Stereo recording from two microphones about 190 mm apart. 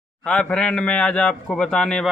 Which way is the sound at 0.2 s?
5° left (ahead or behind).